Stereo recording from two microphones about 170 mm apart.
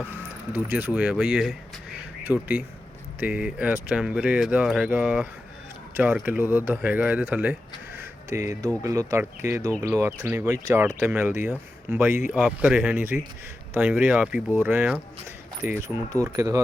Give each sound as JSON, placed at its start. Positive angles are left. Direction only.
{"t": 0.5, "sound": "speech", "side_deg": -10}